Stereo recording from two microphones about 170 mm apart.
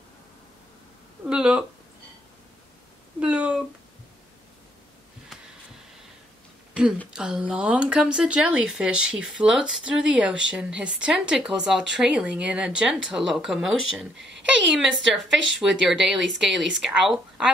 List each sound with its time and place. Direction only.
1.3 s a sound: 5° right (ahead or behind)
3.2 s speech: 5° right (ahead or behind)
7.1 s speech: 5° right (ahead or behind)
14.1 s a woman's voice: 90° right
14.7 s speech: centre (ahead or behind)